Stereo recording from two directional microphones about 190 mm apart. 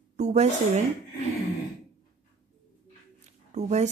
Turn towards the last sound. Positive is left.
turn(degrees=-35)  # may be behind; listen again after turning